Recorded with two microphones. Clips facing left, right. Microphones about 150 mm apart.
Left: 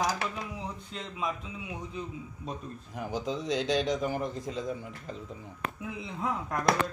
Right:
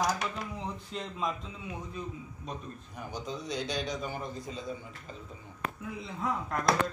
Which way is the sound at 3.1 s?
90° left.